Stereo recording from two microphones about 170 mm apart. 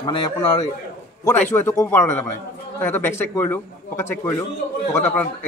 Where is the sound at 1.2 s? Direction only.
10° left (ahead or behind).